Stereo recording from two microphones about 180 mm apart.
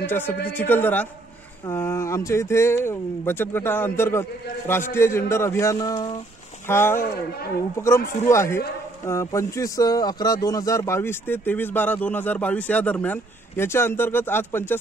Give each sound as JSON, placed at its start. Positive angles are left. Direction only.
{"t": 0.0, "sound": "speech", "side_deg": 10}
{"t": 8.3, "sound": "speech", "side_deg": 15}